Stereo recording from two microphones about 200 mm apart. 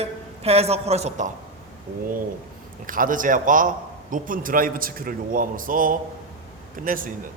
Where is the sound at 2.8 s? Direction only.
45° right (ahead or behind).